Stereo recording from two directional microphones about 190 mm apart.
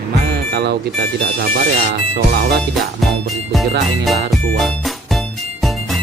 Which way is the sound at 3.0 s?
Centre (ahead or behind).